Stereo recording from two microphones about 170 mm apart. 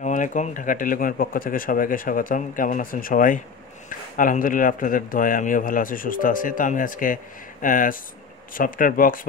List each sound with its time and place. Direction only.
0.0 s a man's voice: 50° left (ahead or behind)